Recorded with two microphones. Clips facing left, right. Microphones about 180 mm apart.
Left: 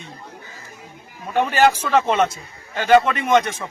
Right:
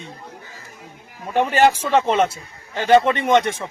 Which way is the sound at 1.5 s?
30° right (ahead or behind).